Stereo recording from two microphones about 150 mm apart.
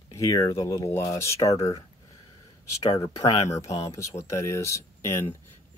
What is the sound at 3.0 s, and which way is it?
Speech, 20° left (ahead or behind).